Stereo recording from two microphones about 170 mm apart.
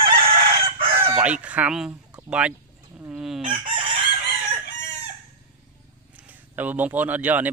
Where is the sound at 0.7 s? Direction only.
35° right (ahead or behind).